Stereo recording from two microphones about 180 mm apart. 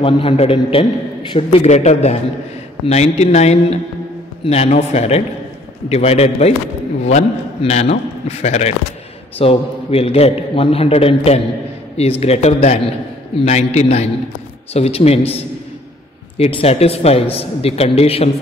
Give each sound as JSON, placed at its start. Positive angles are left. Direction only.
{"t": 0.0, "sound": "a man's voice", "side_deg": 30}
{"t": 16.3, "sound": "a man's voice", "side_deg": 35}